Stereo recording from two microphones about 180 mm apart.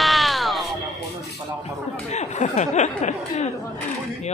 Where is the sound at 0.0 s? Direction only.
Centre (ahead or behind).